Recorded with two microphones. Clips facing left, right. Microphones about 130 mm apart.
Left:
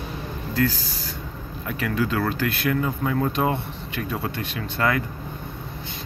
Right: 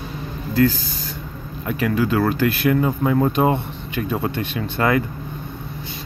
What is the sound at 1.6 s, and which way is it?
Speech, 15° right (ahead or behind).